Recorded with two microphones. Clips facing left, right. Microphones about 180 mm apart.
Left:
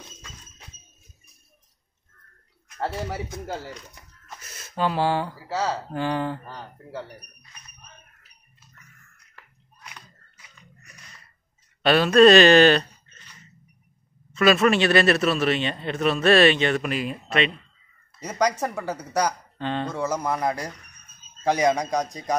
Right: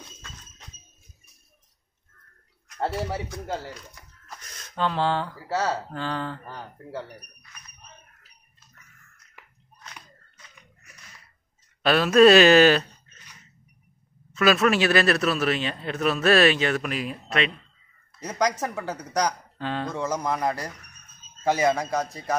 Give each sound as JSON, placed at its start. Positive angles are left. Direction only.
{"t": 4.3, "sound": "a man's voice", "side_deg": 5}
{"t": 9.4, "sound": "a sound", "side_deg": -15}
{"t": 11.8, "sound": "a man's voice", "side_deg": 0}
{"t": 19.6, "sound": "speech", "side_deg": -5}
{"t": 19.9, "sound": "a man's voice", "side_deg": 10}